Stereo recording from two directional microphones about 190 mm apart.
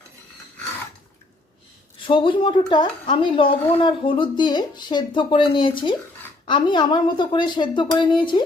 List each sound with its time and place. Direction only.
2.0 s speech: 25° left (ahead or behind)